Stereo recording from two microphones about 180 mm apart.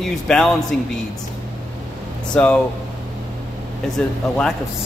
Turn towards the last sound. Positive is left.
turn(degrees=5)  # may be behind; listen again after turning